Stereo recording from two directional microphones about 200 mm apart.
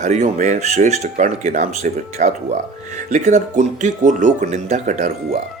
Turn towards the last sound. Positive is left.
turn(degrees=-35)  # may be behind; listen again after turning